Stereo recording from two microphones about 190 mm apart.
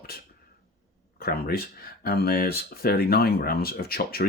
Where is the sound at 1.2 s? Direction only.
55° left (ahead or behind).